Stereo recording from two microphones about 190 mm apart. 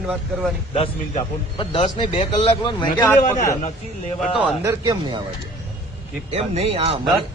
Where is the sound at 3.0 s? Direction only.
15° left (ahead or behind).